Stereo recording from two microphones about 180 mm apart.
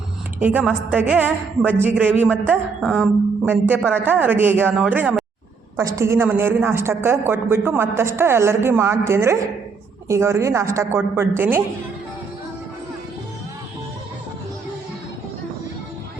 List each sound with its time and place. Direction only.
0.3 s a woman's voice: 10° right (ahead or behind)
3.4 s a woman's voice: 10° right (ahead or behind)